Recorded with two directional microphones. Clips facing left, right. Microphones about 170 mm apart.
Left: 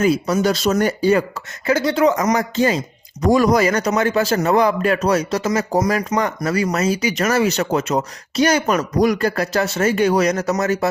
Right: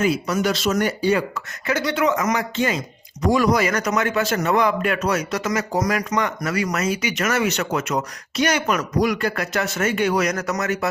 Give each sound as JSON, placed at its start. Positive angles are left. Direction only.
{"t": 0.0, "sound": "a man's voice", "side_deg": 40}
{"t": 1.6, "sound": "a man's voice", "side_deg": 30}